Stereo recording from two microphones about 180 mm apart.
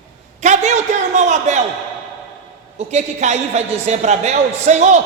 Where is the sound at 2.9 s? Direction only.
40° right (ahead or behind).